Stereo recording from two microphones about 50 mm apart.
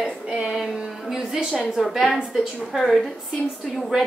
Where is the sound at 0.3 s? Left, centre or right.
Centre.